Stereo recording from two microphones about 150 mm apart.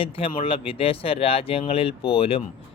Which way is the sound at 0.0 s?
35° left (ahead or behind).